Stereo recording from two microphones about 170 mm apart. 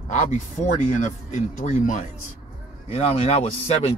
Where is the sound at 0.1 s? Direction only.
45° left (ahead or behind).